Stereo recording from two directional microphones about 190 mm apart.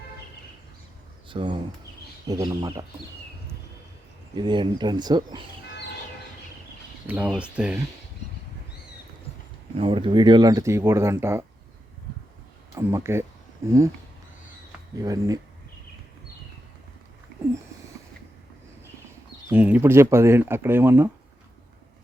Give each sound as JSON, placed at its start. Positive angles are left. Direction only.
{"t": 1.3, "sound": "speech", "side_deg": -25}
{"t": 4.4, "sound": "speech", "side_deg": -25}
{"t": 7.1, "sound": "speech", "side_deg": -5}
{"t": 9.7, "sound": "speech", "side_deg": -25}
{"t": 12.7, "sound": "speech", "side_deg": -15}
{"t": 14.9, "sound": "speech", "side_deg": -20}
{"t": 19.5, "sound": "speech", "side_deg": -10}